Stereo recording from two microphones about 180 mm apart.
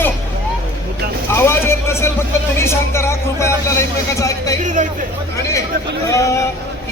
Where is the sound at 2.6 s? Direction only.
15° left (ahead or behind).